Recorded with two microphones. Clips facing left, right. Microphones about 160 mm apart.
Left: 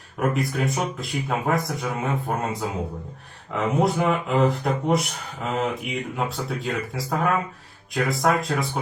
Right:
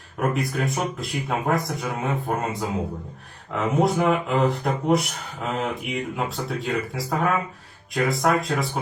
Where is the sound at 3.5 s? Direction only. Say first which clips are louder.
Right 1 dB; centre (ahead or behind).